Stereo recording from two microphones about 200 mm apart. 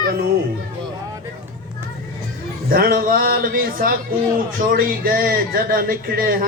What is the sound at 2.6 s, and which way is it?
A man's voice, 45° right (ahead or behind).